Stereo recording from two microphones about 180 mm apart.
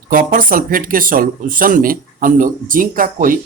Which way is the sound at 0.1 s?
50° right (ahead or behind).